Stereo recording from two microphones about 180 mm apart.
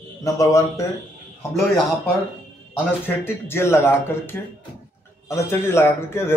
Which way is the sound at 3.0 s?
15° left (ahead or behind).